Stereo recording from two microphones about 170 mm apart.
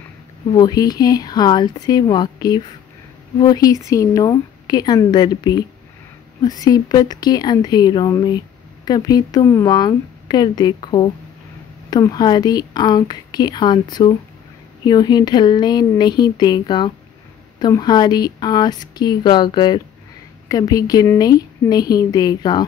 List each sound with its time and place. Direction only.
0.6 s speech: 20° left (ahead or behind)